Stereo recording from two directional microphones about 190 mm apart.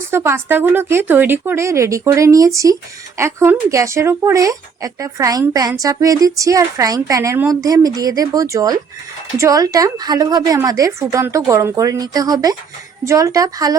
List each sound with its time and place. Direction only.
0.1 s a woman's voice: 15° right (ahead or behind)